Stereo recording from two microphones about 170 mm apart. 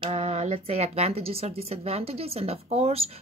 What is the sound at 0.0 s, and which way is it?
Speech, 40° right (ahead or behind).